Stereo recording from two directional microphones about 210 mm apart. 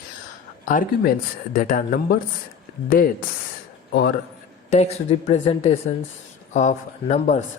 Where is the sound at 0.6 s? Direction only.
40° left (ahead or behind).